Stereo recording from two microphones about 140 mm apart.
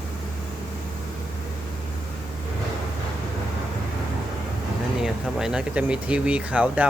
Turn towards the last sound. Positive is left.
turn(degrees=-10)  # may be behind; listen again after turning